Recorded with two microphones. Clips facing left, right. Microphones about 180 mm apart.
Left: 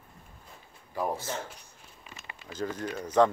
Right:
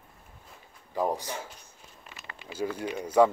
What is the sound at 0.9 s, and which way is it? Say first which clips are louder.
Speech: right 2 dB; 15° right (ahead or behind).